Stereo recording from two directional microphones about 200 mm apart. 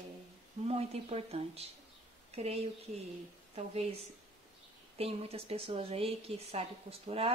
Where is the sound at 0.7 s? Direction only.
30° right (ahead or behind).